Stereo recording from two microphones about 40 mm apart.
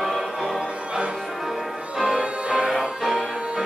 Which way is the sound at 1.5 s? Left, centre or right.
Centre.